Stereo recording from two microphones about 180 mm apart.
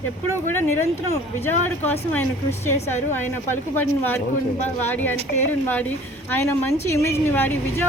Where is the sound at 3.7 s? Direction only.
10° left (ahead or behind).